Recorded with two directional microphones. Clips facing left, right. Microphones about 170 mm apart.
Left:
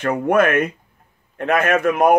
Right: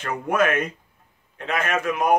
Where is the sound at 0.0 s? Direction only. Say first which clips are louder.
Left 6 dB; 55° left (ahead or behind).